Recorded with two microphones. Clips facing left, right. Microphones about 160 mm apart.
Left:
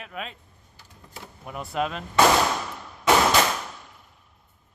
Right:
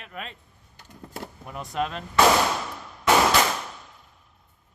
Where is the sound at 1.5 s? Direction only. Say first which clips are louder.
Left 1 dB; 5° left (ahead or behind).